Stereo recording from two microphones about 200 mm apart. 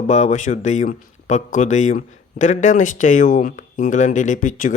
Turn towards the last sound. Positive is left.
turn(degrees=40)  # may be behind; listen again after turning